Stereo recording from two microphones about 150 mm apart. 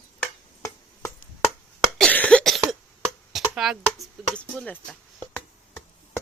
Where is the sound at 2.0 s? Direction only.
10° left (ahead or behind).